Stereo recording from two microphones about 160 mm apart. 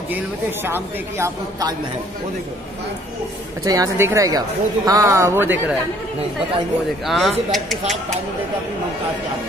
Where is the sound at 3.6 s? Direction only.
20° right (ahead or behind).